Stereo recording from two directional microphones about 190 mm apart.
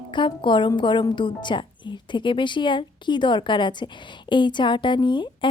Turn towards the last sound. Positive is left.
turn(degrees=25)  # may be behind; listen again after turning